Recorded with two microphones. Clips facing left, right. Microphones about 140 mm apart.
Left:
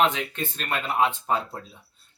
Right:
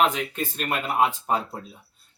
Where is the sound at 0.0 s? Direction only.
5° right (ahead or behind).